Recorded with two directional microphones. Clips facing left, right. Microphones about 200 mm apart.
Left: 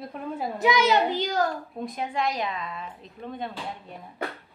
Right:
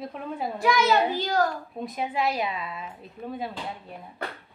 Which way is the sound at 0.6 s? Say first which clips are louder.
Even; 20° left (ahead or behind).